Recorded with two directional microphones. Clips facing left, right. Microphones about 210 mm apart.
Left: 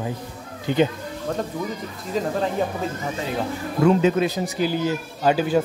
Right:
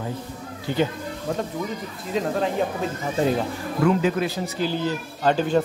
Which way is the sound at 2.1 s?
Centre (ahead or behind).